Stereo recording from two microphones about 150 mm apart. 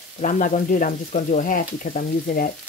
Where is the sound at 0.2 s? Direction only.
60° left (ahead or behind).